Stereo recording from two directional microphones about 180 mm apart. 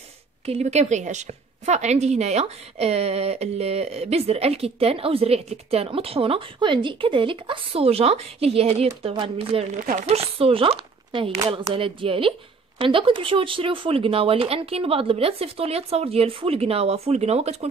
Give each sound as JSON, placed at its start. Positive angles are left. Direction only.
{"t": 0.5, "sound": "a woman's voice", "side_deg": -40}
{"t": 9.8, "sound": "speech", "side_deg": -50}
{"t": 10.0, "sound": "a woman's voice", "side_deg": -35}